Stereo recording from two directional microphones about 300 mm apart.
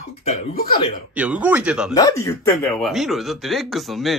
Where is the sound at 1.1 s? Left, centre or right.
Centre.